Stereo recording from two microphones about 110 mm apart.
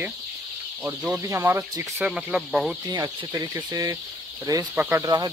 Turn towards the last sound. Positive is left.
turn(degrees=-35)  # may be behind; listen again after turning